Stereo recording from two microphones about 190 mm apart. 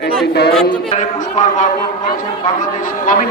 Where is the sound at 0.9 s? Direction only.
40° left (ahead or behind).